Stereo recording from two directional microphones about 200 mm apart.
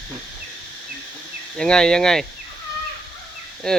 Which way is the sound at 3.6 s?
5° left (ahead or behind).